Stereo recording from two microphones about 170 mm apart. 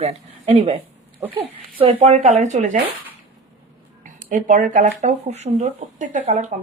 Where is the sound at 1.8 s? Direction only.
40° right (ahead or behind).